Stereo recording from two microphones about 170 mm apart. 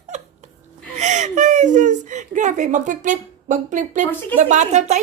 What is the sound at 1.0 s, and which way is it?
Speech, 45° right (ahead or behind).